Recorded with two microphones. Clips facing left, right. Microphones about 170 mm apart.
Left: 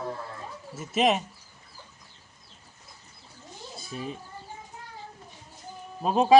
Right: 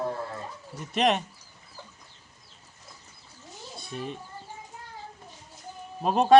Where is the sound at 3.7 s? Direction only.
Centre (ahead or behind).